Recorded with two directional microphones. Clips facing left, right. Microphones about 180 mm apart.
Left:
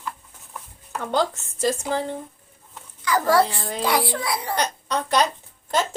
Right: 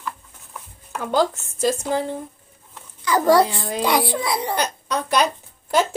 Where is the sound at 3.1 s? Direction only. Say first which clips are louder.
Right 3 dB; 20° right (ahead or behind).